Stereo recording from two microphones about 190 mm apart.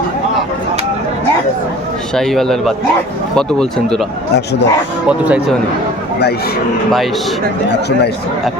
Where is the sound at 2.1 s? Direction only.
Centre (ahead or behind).